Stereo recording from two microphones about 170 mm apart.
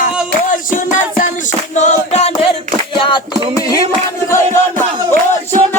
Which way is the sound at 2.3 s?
30° left (ahead or behind).